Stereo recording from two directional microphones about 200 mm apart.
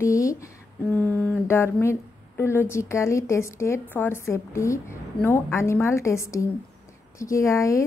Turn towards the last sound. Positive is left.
turn(degrees=15)  # may be behind; listen again after turning